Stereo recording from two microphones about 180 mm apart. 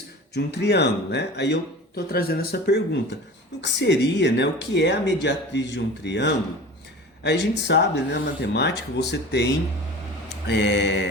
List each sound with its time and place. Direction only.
0.3 s speech: 65° left (ahead or behind)
2.0 s speech: 60° left (ahead or behind)